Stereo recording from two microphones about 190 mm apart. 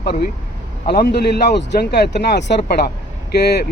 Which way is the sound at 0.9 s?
60° left (ahead or behind).